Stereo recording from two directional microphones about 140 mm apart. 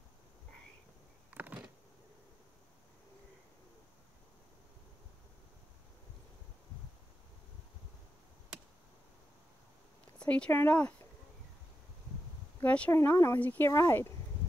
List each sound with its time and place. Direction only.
1.3 s a sound: 10° right (ahead or behind)
10.1 s speech: 10° left (ahead or behind)
12.6 s speech: 10° left (ahead or behind)